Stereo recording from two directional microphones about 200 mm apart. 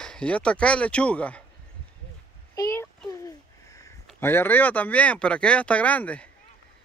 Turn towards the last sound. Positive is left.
turn(degrees=5)  # may be behind; listen again after turning